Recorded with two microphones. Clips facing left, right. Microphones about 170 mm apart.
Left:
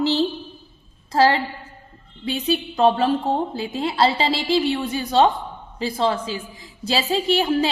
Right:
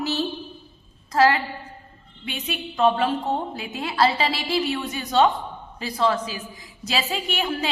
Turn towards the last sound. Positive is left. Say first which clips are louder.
# left 7 dB
turn(degrees=30)  # may be behind; listen again after turning